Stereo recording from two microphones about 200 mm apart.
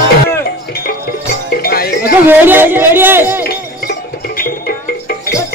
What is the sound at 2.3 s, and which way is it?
A man's voice, 10° right (ahead or behind).